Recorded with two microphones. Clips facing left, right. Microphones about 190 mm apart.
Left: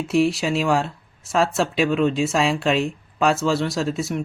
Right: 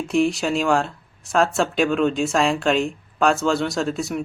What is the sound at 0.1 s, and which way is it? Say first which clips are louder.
Speech: even; centre (ahead or behind).